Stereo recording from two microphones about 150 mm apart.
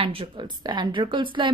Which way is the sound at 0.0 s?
35° right (ahead or behind).